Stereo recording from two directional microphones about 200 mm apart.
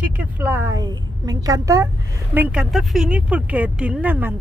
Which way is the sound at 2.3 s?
5° right (ahead or behind).